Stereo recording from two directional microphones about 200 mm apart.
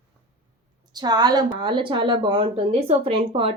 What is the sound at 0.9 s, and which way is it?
A woman's voice, 20° right (ahead or behind).